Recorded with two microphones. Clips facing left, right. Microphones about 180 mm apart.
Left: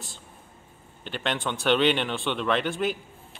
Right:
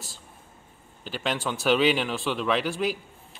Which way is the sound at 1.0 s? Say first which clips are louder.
Even; 5° right (ahead or behind).